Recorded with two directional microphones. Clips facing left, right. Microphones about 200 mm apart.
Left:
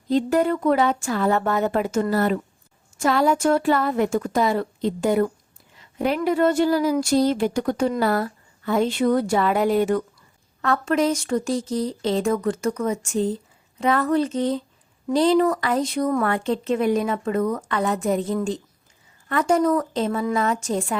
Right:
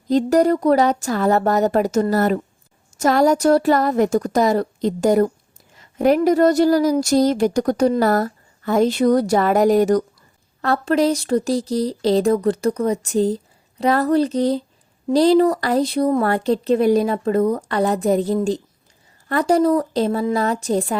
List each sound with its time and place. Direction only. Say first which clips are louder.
0.1 s speech: right 4 dB; 40° right (ahead or behind)